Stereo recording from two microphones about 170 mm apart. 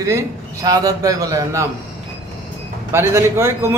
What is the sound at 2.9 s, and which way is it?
Speech, 15° right (ahead or behind).